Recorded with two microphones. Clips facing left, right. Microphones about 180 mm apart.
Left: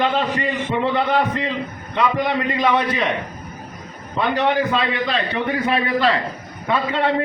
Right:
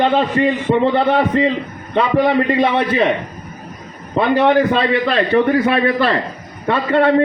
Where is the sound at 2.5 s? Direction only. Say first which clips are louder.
Right 4 dB; 60° right (ahead or behind).